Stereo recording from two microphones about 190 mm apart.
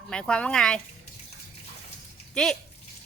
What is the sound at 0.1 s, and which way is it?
Speech, 5° left (ahead or behind).